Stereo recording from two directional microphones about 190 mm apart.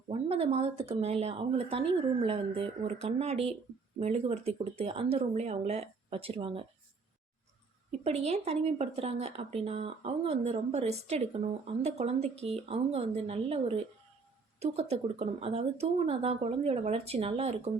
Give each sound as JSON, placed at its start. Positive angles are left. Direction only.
{"t": 0.1, "sound": "speech", "side_deg": -30}
{"t": 8.0, "sound": "speech", "side_deg": -35}